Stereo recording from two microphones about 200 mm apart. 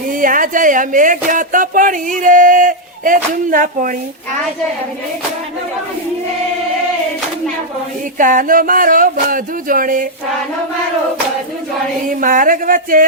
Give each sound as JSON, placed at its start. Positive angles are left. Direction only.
{"t": 0.1, "sound": "speech", "side_deg": -40}
{"t": 8.2, "sound": "speech", "side_deg": -40}
{"t": 12.0, "sound": "speech", "side_deg": -40}